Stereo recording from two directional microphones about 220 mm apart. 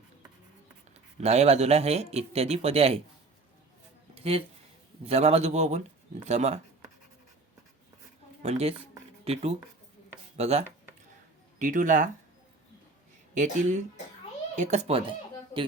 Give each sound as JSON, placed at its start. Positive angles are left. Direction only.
{"t": 1.2, "sound": "speech", "side_deg": -30}
{"t": 4.1, "sound": "a sound", "side_deg": -25}
{"t": 5.0, "sound": "speech", "side_deg": -30}
{"t": 8.4, "sound": "speech", "side_deg": -30}
{"t": 13.3, "sound": "speech", "side_deg": -35}